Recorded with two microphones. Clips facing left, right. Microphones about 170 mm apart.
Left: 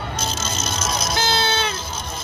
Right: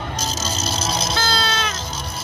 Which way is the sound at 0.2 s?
35° right (ahead or behind).